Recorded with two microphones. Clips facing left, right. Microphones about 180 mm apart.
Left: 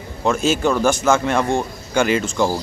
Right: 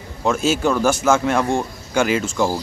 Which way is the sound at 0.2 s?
5° right (ahead or behind).